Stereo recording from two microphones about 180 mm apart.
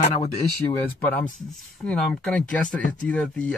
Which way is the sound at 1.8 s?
5° left (ahead or behind).